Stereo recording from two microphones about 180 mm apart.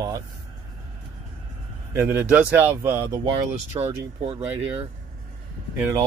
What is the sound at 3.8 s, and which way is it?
Speech, 30° right (ahead or behind).